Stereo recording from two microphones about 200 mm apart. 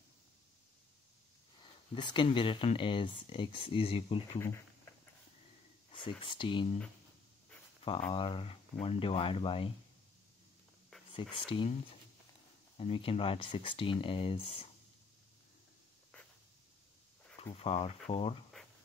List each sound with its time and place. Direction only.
1.6 s speech: 25° left (ahead or behind)
4.4 s a sound: 15° left (ahead or behind)
5.9 s speech: 25° left (ahead or behind)
8.1 s speech: 25° left (ahead or behind)
11.1 s speech: 25° left (ahead or behind)
12.7 s speech: 30° left (ahead or behind)
17.4 s speech: 30° left (ahead or behind)